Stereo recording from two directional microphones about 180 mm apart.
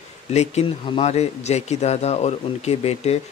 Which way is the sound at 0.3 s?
35° left (ahead or behind).